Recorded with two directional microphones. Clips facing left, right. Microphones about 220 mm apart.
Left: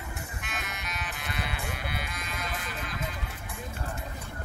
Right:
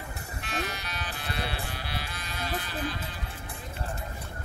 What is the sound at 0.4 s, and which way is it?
Music, 35° right (ahead or behind).